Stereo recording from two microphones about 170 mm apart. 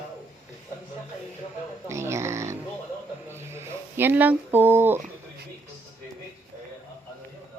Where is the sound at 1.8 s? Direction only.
15° right (ahead or behind).